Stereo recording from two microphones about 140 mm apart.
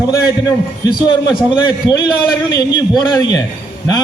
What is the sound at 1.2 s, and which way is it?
A man's voice, 30° left (ahead or behind).